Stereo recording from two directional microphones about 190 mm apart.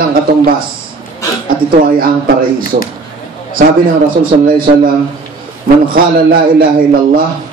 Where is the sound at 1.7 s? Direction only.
50° right (ahead or behind).